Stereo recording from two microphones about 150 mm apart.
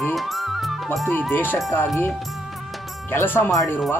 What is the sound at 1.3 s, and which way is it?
Speech, 15° left (ahead or behind).